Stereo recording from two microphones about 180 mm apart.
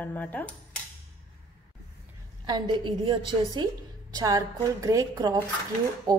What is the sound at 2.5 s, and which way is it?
A woman's voice, 25° right (ahead or behind).